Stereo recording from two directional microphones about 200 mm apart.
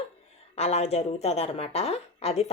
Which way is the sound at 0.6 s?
35° left (ahead or behind).